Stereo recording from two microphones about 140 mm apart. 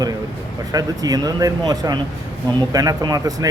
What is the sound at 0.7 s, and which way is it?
Speech, 25° right (ahead or behind).